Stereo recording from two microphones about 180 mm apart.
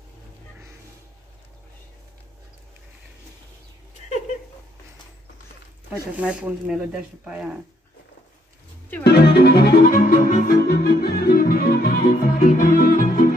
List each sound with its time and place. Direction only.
6.1 s speech: 5° right (ahead or behind)
9.0 s music: 65° left (ahead or behind)